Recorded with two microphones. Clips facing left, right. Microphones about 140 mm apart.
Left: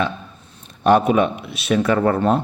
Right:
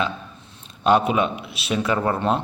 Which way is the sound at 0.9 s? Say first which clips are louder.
Left 3 dB; 45° left (ahead or behind).